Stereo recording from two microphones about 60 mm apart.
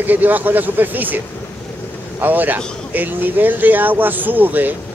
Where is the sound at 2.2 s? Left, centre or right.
Right.